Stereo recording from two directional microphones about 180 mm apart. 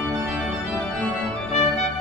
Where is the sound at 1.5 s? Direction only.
35° left (ahead or behind).